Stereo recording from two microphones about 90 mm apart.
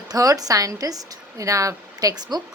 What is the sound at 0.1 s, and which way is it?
A woman's voice, 45° right (ahead or behind).